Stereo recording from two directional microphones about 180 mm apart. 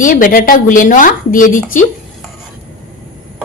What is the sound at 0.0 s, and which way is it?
A woman's voice, 50° left (ahead or behind).